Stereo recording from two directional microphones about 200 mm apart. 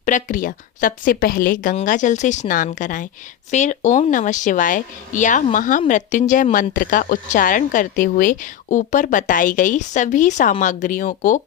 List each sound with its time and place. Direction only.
0.0 s a woman's voice: 40° left (ahead or behind)